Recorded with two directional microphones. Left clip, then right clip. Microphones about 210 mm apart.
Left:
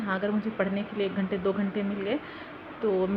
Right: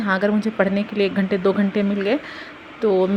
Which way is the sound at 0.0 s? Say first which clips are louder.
Right 9 dB; 40° right (ahead or behind).